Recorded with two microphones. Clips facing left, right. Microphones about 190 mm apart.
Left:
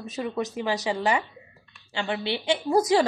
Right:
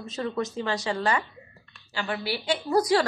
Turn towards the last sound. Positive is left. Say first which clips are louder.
# left 1 dB
turn(degrees=20)  # may be behind; listen again after turning